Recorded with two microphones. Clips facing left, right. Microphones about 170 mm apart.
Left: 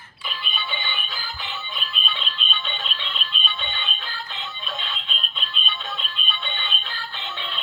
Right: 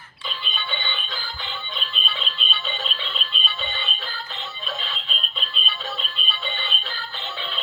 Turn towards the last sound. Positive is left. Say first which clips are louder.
# right 1 dB
turn(degrees=0)  # may be behind; listen again after turning